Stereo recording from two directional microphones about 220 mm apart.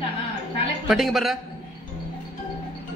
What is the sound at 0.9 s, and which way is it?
Speech, centre (ahead or behind).